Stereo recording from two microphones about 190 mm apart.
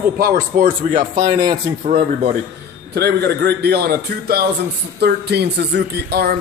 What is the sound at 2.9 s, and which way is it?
A man's voice, 60° right (ahead or behind).